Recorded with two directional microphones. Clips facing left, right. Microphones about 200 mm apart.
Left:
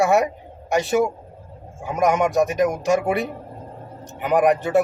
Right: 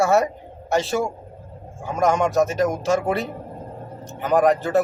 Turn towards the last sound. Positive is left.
turn(degrees=15)  # may be behind; listen again after turning